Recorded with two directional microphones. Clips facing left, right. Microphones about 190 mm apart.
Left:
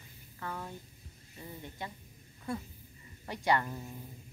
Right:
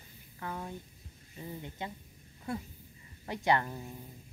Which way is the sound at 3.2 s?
15° right (ahead or behind).